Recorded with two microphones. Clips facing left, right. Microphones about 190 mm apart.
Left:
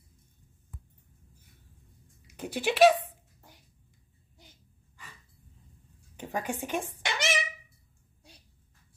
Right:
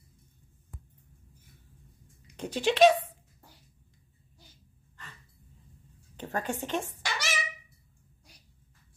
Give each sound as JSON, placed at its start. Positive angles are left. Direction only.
{"t": 2.2, "sound": "speech", "side_deg": 10}
{"t": 6.1, "sound": "speech", "side_deg": 10}
{"t": 7.0, "sound": "a sound", "side_deg": 20}